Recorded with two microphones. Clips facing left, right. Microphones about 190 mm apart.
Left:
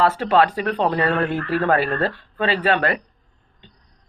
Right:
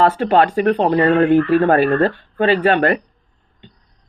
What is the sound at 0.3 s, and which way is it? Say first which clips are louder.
Speech: right 4 dB; 25° right (ahead or behind).